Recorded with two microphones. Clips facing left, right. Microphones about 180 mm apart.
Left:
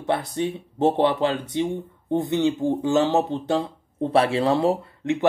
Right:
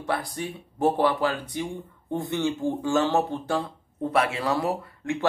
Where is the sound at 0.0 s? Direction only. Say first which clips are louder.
Left 5 dB; 25° left (ahead or behind).